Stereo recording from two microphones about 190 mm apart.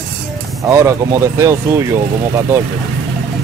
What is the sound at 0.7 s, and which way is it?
Speech, 15° right (ahead or behind).